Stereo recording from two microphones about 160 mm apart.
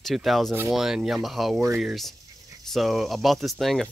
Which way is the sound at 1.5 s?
20° right (ahead or behind).